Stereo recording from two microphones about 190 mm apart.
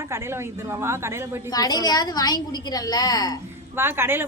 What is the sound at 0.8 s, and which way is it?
Speech, 15° right (ahead or behind).